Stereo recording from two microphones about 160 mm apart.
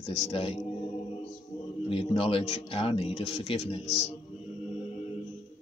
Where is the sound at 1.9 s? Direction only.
35° left (ahead or behind).